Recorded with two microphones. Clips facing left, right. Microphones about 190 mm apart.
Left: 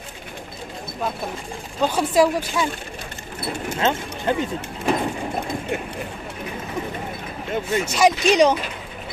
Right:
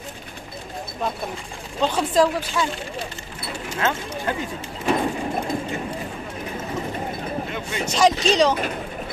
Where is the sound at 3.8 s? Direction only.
20° left (ahead or behind).